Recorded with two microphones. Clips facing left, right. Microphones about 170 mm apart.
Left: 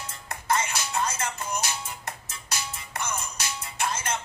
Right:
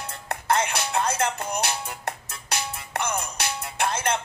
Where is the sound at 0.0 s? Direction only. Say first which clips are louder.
Right 5 dB; 60° right (ahead or behind).